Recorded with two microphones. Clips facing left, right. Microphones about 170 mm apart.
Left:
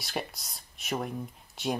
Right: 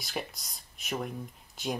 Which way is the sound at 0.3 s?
Centre (ahead or behind).